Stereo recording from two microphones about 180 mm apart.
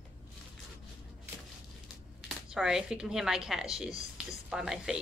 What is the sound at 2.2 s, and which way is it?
Speech, 5° right (ahead or behind).